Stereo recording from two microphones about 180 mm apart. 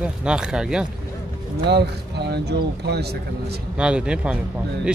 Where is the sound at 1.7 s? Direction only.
65° right (ahead or behind).